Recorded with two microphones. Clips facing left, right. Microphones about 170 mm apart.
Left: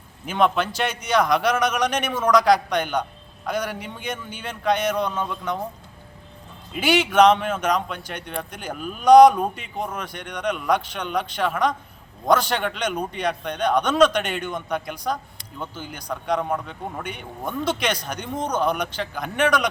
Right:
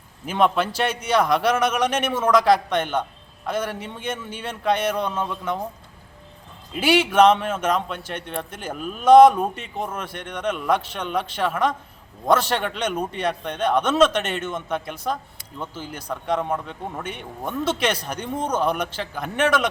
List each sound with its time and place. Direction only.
0.3 s speech: 5° right (ahead or behind)
6.7 s speech: 5° right (ahead or behind)
18.3 s speech: 30° right (ahead or behind)
18.6 s speech: 5° right (ahead or behind)